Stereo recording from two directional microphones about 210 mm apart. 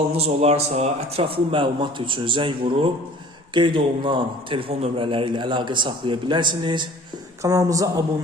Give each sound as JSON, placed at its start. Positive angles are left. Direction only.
{"t": 0.1, "sound": "a man's voice", "side_deg": -30}